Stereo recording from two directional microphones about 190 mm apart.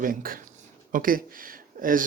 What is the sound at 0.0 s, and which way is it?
Speech, 45° right (ahead or behind).